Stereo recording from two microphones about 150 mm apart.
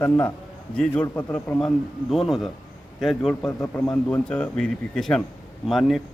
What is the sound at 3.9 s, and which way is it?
Speech, 10° left (ahead or behind).